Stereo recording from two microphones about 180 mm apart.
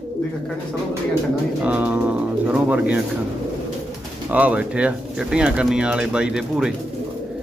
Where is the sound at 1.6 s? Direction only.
10° right (ahead or behind).